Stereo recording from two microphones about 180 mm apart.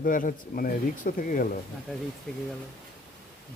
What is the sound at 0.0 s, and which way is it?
Speech, 50° left (ahead or behind).